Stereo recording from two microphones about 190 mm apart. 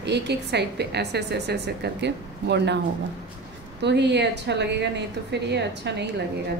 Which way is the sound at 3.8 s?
65° right (ahead or behind).